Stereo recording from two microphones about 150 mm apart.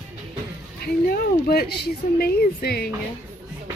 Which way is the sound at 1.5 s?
90° left.